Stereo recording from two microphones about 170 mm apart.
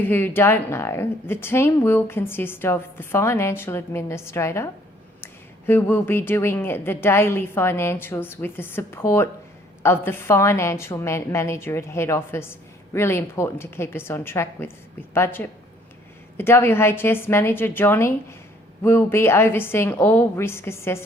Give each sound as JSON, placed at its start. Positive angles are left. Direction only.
{"t": 0.0, "sound": "a woman's voice", "side_deg": 10}